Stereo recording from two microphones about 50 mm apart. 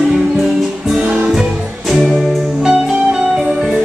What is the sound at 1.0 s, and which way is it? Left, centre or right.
Music, right.